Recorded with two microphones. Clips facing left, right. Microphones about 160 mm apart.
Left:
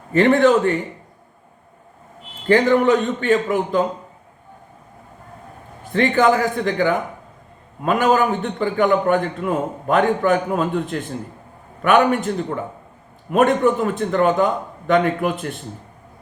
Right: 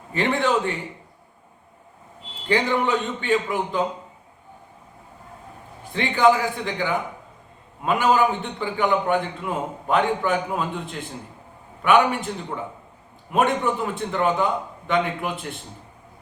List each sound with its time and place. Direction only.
0.1 s a man's voice: 50° left (ahead or behind)
2.5 s a man's voice: 50° left (ahead or behind)
5.9 s a man's voice: 50° left (ahead or behind)